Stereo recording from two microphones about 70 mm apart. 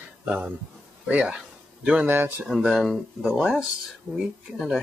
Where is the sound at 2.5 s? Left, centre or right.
Centre.